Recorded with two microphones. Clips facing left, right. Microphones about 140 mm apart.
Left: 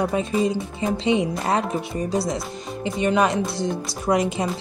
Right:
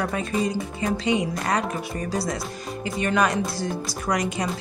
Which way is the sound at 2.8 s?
25° left (ahead or behind).